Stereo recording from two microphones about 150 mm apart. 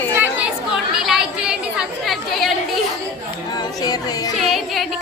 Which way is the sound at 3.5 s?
25° left (ahead or behind).